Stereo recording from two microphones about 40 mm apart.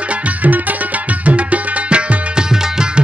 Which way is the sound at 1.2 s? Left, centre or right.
Right.